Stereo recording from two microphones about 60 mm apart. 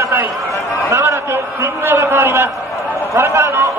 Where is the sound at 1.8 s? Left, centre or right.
Right.